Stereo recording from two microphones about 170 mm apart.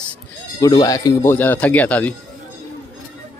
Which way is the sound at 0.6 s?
20° left (ahead or behind).